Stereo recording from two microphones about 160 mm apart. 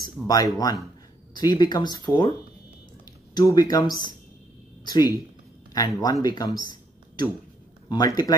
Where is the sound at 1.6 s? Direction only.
25° left (ahead or behind).